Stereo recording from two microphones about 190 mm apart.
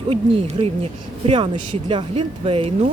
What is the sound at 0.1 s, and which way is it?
Speech, 30° right (ahead or behind).